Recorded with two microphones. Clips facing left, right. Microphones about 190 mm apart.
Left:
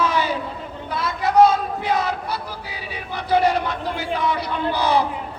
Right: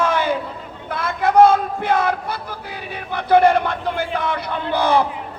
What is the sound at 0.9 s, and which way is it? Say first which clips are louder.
A man's voice: right 2 dB; 55° right (ahead or behind).